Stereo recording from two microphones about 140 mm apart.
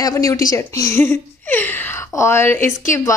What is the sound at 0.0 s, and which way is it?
A woman's voice, 25° left (ahead or behind).